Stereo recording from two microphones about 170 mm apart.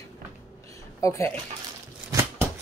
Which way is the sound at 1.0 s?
15° left (ahead or behind).